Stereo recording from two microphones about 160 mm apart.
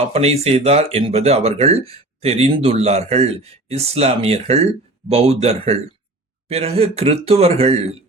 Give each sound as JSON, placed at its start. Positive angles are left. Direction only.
{"t": 0.1, "sound": "speech", "side_deg": -40}